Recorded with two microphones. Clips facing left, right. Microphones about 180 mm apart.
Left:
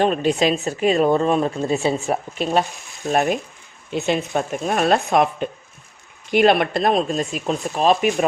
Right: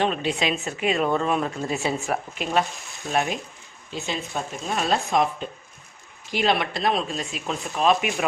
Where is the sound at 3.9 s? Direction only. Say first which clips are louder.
Left 9 dB; 60° left (ahead or behind).